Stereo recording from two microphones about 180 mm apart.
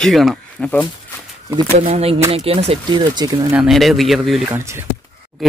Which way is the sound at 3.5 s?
Centre (ahead or behind).